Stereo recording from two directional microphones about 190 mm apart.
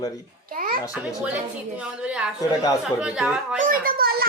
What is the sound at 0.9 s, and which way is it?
Speech, 5° right (ahead or behind).